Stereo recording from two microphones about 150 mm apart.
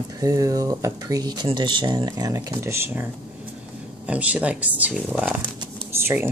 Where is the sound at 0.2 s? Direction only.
20° right (ahead or behind).